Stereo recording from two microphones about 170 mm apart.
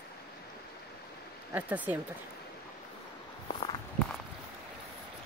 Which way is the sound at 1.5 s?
10° right (ahead or behind).